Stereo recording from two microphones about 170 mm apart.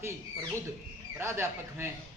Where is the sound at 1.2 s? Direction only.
15° right (ahead or behind).